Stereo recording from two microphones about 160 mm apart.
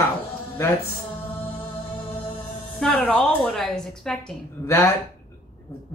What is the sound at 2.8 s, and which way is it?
A woman's voice, 5° left (ahead or behind).